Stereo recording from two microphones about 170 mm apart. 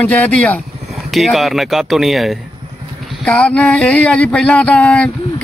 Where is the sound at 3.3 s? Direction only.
5° left (ahead or behind).